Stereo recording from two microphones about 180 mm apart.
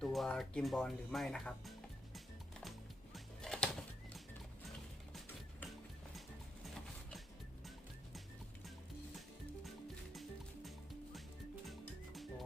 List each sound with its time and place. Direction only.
0.0 s speech: centre (ahead or behind)
2.6 s music: centre (ahead or behind)
9.6 s music: centre (ahead or behind)